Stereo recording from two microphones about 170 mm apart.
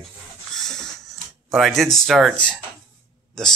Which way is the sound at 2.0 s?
Centre (ahead or behind).